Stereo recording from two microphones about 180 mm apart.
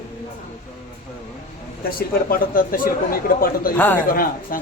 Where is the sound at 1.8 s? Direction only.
50° left (ahead or behind).